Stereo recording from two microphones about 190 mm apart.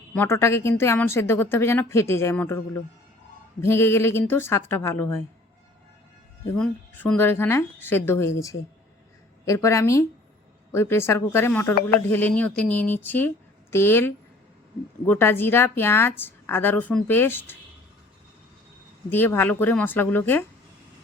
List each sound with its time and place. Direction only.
0.1 s a woman's voice: 10° left (ahead or behind)
6.5 s a woman's voice: 10° left (ahead or behind)
19.1 s a woman's voice: 10° left (ahead or behind)